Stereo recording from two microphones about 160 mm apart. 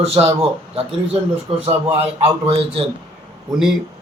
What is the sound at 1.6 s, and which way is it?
Speech, 40° right (ahead or behind).